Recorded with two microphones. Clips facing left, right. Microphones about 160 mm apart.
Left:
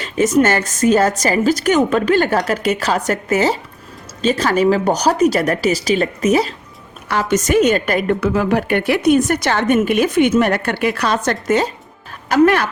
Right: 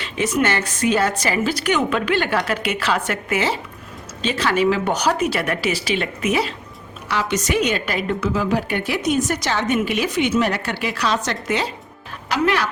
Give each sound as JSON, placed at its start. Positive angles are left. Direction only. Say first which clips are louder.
{"t": 0.0, "sound": "a woman's voice", "louder": "left 6 dB", "side_deg": 45}